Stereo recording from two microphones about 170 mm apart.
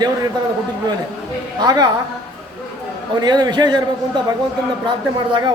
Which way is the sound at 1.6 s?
25° right (ahead or behind).